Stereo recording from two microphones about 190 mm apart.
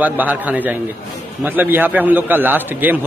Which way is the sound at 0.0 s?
10° right (ahead or behind).